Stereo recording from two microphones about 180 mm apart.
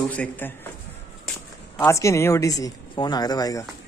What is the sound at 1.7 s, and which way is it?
Speech, 15° left (ahead or behind).